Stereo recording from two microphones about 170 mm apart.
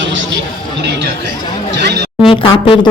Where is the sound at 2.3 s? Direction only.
30° left (ahead or behind).